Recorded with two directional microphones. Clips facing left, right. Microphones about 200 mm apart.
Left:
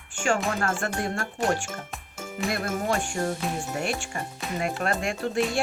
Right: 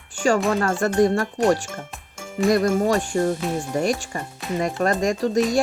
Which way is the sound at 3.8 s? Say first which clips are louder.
Right 6 dB; 40° right (ahead or behind).